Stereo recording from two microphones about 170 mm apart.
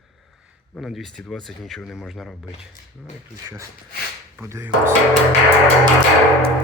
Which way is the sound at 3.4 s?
15° right (ahead or behind).